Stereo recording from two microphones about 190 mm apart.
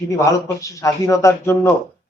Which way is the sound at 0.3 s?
15° left (ahead or behind).